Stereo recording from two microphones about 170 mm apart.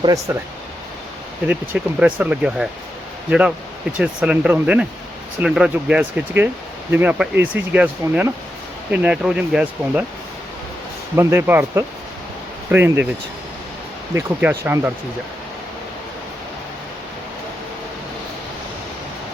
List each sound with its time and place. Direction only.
0.0 s speech: 20° right (ahead or behind)
1.5 s speech: 10° right (ahead or behind)
11.2 s speech: 15° right (ahead or behind)
14.1 s speech: 15° right (ahead or behind)